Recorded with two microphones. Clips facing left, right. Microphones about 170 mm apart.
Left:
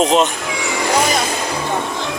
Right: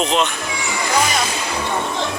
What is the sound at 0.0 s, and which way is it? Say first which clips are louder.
Speech: left 5 dB; 45° left (ahead or behind).